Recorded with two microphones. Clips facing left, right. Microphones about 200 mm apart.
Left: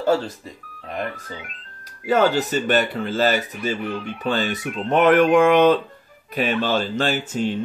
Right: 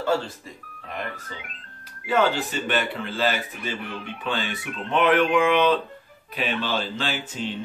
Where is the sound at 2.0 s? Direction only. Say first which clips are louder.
Left 4 dB; 40° left (ahead or behind).